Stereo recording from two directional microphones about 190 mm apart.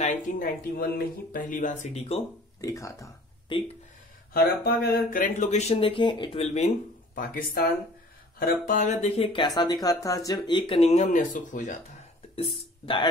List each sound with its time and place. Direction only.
0.0 s speech: 40° left (ahead or behind)
2.6 s speech: 15° left (ahead or behind)
4.3 s speech: 50° left (ahead or behind); by 6.7 s 35° left (ahead or behind)
7.2 s speech: 45° left (ahead or behind)
9.0 s speech: 30° left (ahead or behind)
12.8 s speech: 25° left (ahead or behind)